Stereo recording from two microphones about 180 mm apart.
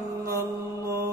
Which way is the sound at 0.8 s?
15° right (ahead or behind).